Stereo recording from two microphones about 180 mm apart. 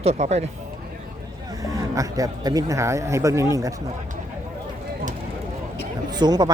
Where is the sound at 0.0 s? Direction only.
35° right (ahead or behind).